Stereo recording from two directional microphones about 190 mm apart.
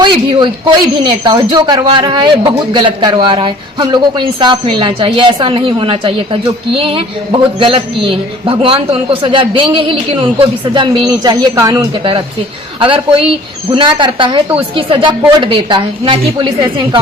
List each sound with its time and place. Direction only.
0.0 s a man's voice: 25° right (ahead or behind)